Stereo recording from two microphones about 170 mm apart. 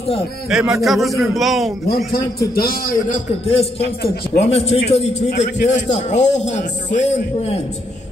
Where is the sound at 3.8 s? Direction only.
75° left (ahead or behind).